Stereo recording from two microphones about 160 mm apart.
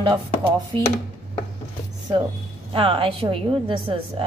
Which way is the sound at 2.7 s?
35° right (ahead or behind).